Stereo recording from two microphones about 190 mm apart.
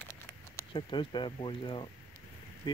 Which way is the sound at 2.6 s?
25° left (ahead or behind).